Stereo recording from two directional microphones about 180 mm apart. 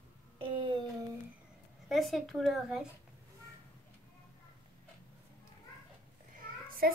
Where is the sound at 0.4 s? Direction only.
30° right (ahead or behind).